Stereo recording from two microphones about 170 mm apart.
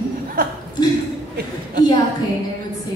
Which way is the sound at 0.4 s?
60° right (ahead or behind).